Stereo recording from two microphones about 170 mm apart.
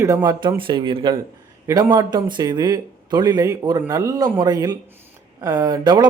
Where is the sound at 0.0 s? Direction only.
20° right (ahead or behind).